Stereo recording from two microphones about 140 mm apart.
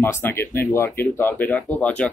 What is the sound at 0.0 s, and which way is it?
Speech, 15° left (ahead or behind).